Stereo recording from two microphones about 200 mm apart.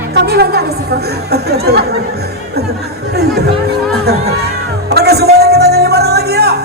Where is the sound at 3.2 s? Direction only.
55° right (ahead or behind).